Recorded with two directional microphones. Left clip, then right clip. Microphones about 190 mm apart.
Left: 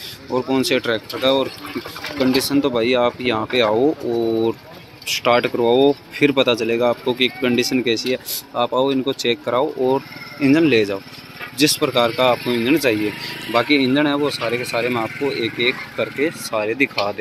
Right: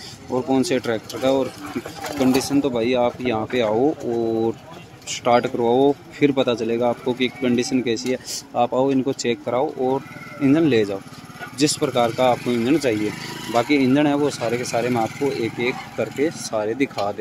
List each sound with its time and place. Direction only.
0.3 s speech: centre (ahead or behind)
0.6 s speech: 10° right (ahead or behind)
3.8 s speech: 15° left (ahead or behind)
4.2 s speech: 10° right (ahead or behind)
9.8 s speech: 10° left (ahead or behind)
10.4 s speech: 5° right (ahead or behind)